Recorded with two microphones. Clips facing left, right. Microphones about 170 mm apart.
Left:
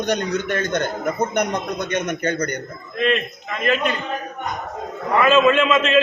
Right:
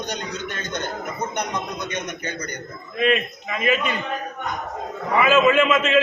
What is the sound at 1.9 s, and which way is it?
Speech, 55° left (ahead or behind).